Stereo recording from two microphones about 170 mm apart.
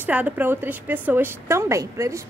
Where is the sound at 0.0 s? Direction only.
10° right (ahead or behind).